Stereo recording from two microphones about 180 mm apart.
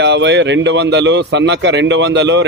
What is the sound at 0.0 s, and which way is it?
A man's voice, 75° right (ahead or behind).